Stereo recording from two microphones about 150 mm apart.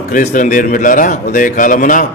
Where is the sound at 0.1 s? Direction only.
60° left (ahead or behind).